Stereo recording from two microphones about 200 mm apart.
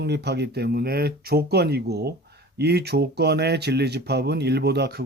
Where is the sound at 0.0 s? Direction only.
55° right (ahead or behind).